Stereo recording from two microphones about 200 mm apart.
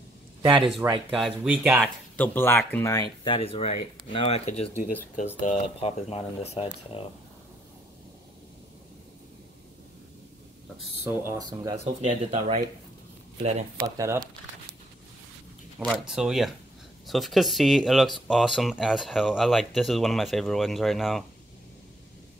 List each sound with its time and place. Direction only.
1.1 s speech: 5° right (ahead or behind)
2.1 s speech: 10° left (ahead or behind); by 7.0 s 30° left (ahead or behind)
11.1 s speech: 10° right (ahead or behind)
11.8 s speech: 35° right (ahead or behind)
13.7 s speech: 15° right (ahead or behind)
15.8 s speech: centre (ahead or behind)